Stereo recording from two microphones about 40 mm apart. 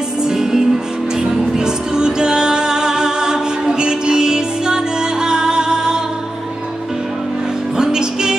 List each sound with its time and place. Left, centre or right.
0.2 s music: centre
7.7 s music: centre